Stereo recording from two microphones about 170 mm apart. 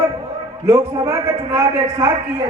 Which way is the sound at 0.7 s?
20° right (ahead or behind).